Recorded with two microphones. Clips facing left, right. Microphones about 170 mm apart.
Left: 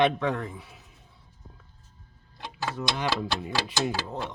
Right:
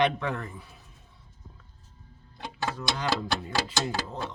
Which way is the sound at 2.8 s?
20° left (ahead or behind).